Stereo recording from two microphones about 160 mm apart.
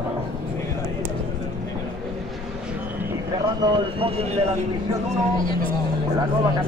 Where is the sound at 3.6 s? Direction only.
25° right (ahead or behind).